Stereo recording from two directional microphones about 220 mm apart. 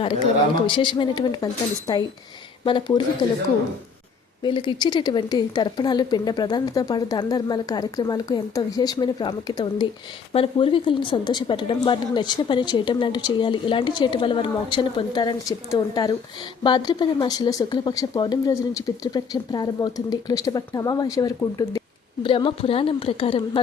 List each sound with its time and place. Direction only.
0.7 s a woman's voice: 20° left (ahead or behind)
4.4 s a woman's voice: 20° left (ahead or behind)